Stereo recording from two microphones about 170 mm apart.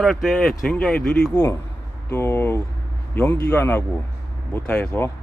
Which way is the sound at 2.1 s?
15° left (ahead or behind).